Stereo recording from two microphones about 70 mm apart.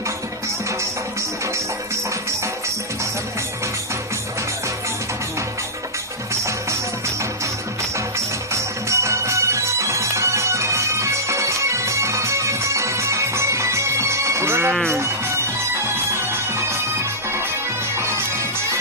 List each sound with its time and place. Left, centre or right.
8.5 s music: right
17.9 s music: right